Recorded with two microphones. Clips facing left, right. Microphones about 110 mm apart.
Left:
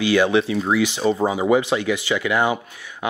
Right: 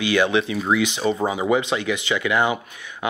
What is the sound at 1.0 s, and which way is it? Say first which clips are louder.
Speech: left 2 dB; 35° left (ahead or behind).